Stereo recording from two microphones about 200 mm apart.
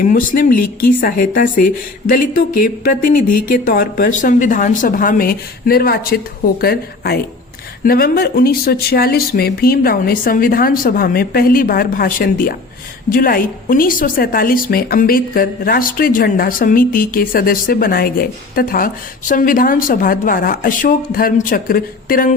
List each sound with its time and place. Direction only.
0.0 s a woman's voice: 40° left (ahead or behind)